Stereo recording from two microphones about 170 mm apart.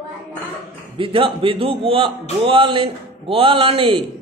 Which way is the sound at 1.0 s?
30° right (ahead or behind).